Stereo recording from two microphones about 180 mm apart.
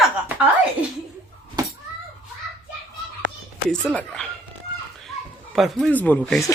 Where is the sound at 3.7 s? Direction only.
5° left (ahead or behind).